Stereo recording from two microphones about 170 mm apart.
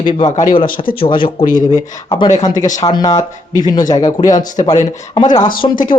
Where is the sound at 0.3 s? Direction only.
50° left (ahead or behind).